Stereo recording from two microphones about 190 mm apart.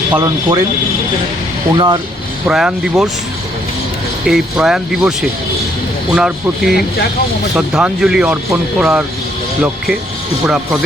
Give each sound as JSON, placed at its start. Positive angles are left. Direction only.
{"t": 0.1, "sound": "speech", "side_deg": -15}
{"t": 1.7, "sound": "speech", "side_deg": -25}
{"t": 2.5, "sound": "speech", "side_deg": -5}
{"t": 4.3, "sound": "speech", "side_deg": 0}
{"t": 6.1, "sound": "speech", "side_deg": -5}
{"t": 10.4, "sound": "speech", "side_deg": -5}